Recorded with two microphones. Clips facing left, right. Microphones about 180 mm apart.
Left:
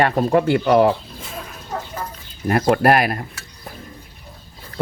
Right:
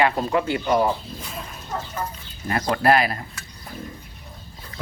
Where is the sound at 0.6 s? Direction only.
70° left (ahead or behind).